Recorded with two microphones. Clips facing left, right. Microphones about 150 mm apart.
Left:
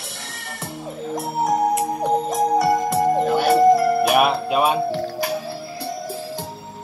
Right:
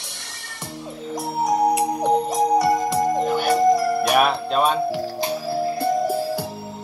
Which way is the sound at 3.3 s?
30° left (ahead or behind).